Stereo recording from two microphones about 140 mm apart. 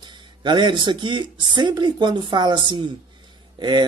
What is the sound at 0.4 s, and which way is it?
Speech, 35° right (ahead or behind).